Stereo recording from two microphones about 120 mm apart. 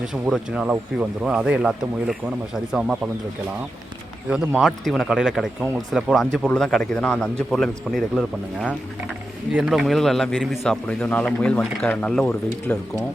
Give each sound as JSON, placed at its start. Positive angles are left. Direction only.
{"t": 0.0, "sound": "speech", "side_deg": -5}
{"t": 4.3, "sound": "speech", "side_deg": -5}
{"t": 9.5, "sound": "speech", "side_deg": -10}
{"t": 9.7, "sound": "speech", "side_deg": 0}